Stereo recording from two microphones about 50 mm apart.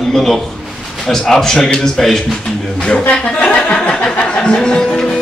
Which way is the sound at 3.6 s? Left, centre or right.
Left.